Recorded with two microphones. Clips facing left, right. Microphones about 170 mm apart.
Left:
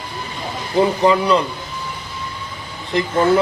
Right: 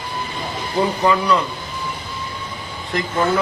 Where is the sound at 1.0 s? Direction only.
25° left (ahead or behind).